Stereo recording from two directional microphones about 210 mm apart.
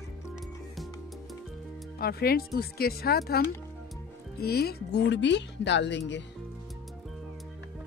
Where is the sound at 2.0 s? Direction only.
45° left (ahead or behind).